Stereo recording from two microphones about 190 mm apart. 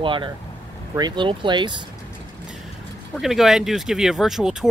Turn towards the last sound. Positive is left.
turn(degrees=0)  # may be behind; listen again after turning